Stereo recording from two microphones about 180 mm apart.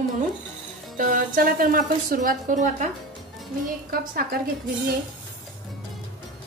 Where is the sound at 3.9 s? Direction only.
55° right (ahead or behind).